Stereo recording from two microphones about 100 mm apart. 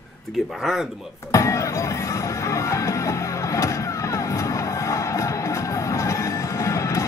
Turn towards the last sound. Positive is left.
turn(degrees=30)  # may be behind; listen again after turning